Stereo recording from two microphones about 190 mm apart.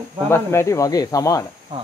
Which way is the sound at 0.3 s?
15° left (ahead or behind).